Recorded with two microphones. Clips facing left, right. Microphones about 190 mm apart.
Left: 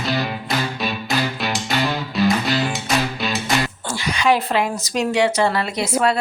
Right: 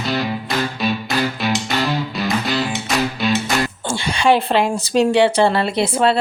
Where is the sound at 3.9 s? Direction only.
30° right (ahead or behind).